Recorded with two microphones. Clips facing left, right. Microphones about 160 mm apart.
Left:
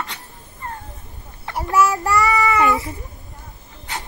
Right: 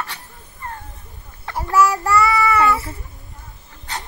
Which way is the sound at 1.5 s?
20° left (ahead or behind).